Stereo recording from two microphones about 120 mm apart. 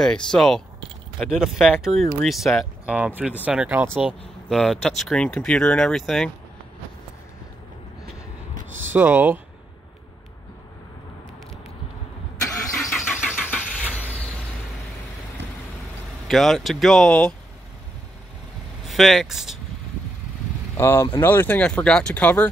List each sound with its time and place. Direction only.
0.0 s speech: 5° left (ahead or behind)
2.8 s speech: 10° right (ahead or behind)
4.5 s speech: centre (ahead or behind)
8.9 s speech: 15° right (ahead or behind)
12.4 s vehicle: 25° left (ahead or behind)
12.9 s vehicle: 5° right (ahead or behind)
13.3 s vehicle: 15° left (ahead or behind)
16.3 s speech: centre (ahead or behind)
18.9 s speech: centre (ahead or behind)
20.7 s speech: 20° left (ahead or behind)